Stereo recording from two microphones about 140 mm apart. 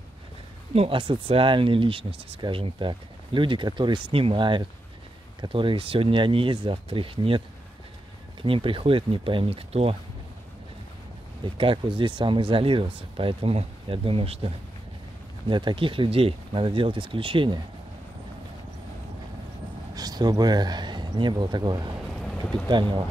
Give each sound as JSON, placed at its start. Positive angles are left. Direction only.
{"t": 0.7, "sound": "speech", "side_deg": -40}
{"t": 11.4, "sound": "speech", "side_deg": -40}
{"t": 19.9, "sound": "speech", "side_deg": -25}
{"t": 22.2, "sound": "a sound", "side_deg": 5}
{"t": 22.7, "sound": "speech", "side_deg": -35}